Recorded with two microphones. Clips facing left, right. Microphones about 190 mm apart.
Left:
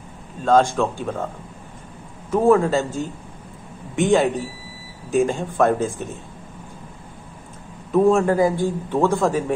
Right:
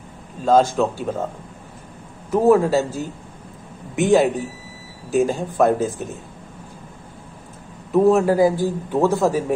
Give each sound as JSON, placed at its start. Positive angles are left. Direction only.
{"t": 0.5, "sound": "a man's voice", "side_deg": -5}
{"t": 2.3, "sound": "a man's voice", "side_deg": -5}
{"t": 8.0, "sound": "a man's voice", "side_deg": -5}